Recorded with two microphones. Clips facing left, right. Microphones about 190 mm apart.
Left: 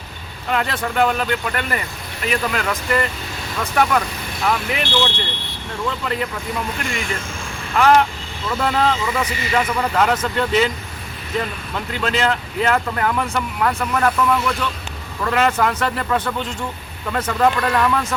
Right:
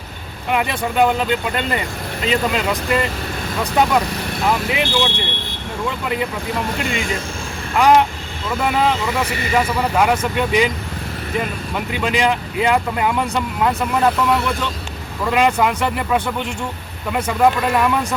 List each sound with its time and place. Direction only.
0.5 s speech: 15° right (ahead or behind)
7.8 s speech: 15° right (ahead or behind)